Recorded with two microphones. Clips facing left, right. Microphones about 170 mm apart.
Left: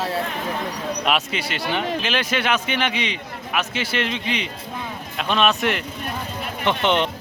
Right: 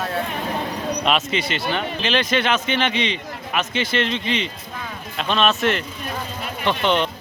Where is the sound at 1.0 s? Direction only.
10° left (ahead or behind).